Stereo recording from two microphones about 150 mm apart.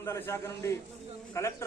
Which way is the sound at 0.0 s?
15° left (ahead or behind).